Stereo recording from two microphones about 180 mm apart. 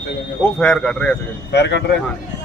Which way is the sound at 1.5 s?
70° left (ahead or behind).